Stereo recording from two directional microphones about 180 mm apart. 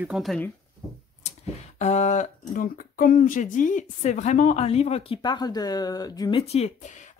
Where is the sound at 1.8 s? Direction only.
40° left (ahead or behind); by 6.4 s 20° left (ahead or behind).